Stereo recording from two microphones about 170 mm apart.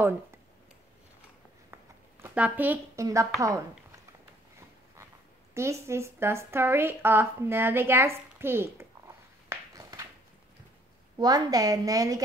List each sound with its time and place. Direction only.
2.2 s a woman's voice: 10° right (ahead or behind)
5.5 s a woman's voice: 15° right (ahead or behind)
11.1 s a woman's voice: 25° right (ahead or behind)